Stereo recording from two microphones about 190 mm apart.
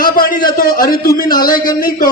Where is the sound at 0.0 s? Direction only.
50° left (ahead or behind).